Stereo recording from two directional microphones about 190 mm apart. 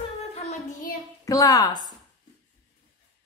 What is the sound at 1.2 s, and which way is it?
Speech, 15° left (ahead or behind).